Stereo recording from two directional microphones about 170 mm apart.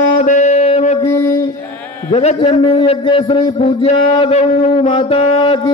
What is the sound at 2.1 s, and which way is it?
A man's voice, 35° left (ahead or behind).